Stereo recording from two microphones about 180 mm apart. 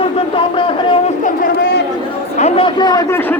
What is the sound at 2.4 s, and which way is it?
Speech, 35° left (ahead or behind).